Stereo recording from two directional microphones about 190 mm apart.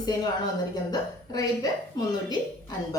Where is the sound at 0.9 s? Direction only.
20° left (ahead or behind).